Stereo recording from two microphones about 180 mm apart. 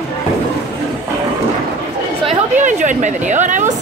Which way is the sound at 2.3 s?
40° right (ahead or behind).